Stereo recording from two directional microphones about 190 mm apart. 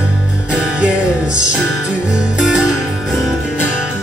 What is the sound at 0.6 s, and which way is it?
Music, 5° right (ahead or behind).